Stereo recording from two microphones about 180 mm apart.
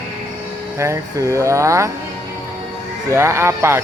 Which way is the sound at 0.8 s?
15° right (ahead or behind).